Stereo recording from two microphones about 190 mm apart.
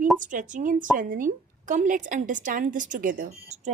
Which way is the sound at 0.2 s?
45° right (ahead or behind).